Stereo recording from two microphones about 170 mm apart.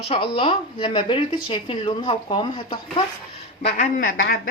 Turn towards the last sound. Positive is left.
turn(degrees=60)  # may be behind; listen again after turning